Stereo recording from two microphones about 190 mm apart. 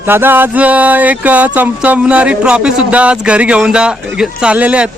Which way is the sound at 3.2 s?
5° right (ahead or behind).